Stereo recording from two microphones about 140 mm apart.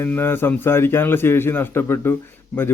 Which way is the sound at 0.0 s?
15° left (ahead or behind).